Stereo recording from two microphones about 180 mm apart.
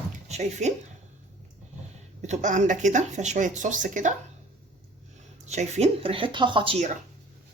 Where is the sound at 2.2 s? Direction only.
40° right (ahead or behind).